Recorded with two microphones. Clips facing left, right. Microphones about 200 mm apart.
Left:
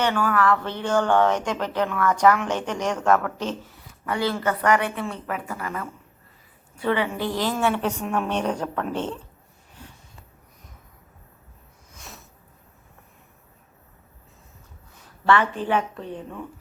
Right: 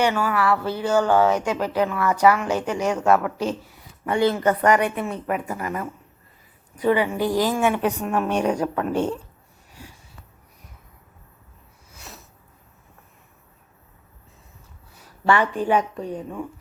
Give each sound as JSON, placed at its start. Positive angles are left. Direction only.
{"t": 0.0, "sound": "speech", "side_deg": -10}
{"t": 4.0, "sound": "a woman's voice", "side_deg": -20}
{"t": 9.8, "sound": "sniff", "side_deg": -10}
{"t": 11.9, "sound": "a sound", "side_deg": -5}
{"t": 15.0, "sound": "speech", "side_deg": -10}